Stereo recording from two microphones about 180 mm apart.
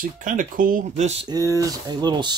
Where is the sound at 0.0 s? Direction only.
45° right (ahead or behind).